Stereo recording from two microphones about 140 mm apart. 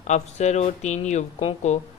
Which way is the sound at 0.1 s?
55° left (ahead or behind).